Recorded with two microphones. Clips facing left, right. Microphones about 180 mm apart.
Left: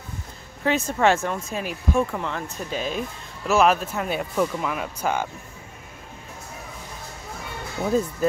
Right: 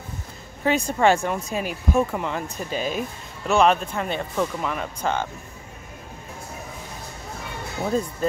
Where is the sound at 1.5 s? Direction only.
Centre (ahead or behind).